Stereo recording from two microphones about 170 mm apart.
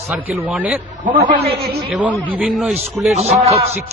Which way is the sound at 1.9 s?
5° right (ahead or behind).